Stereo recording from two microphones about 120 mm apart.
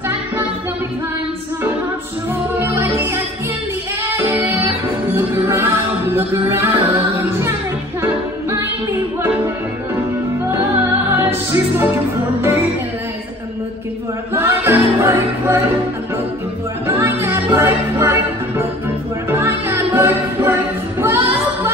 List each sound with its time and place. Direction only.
2.6 s music: 20° right (ahead or behind)
4.2 s music: 20° right (ahead or behind)
10.5 s music: 20° right (ahead or behind)
14.3 s music: 20° right (ahead or behind)
16.8 s music: 20° right (ahead or behind)
19.2 s music: 20° right (ahead or behind)